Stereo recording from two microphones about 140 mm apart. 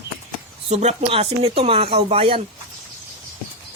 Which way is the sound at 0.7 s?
50° right (ahead or behind).